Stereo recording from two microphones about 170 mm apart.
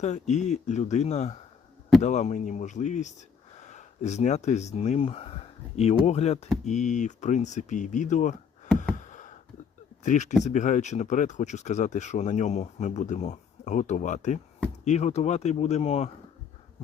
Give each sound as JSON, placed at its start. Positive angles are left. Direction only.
{"t": 0.0, "sound": "speech", "side_deg": 45}
{"t": 9.0, "sound": "a sound", "side_deg": 45}
{"t": 10.0, "sound": "speech", "side_deg": 45}